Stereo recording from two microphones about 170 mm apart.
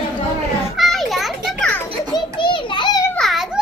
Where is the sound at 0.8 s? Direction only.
Centre (ahead or behind).